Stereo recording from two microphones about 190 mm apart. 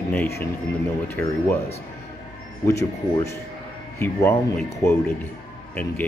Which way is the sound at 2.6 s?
15° left (ahead or behind).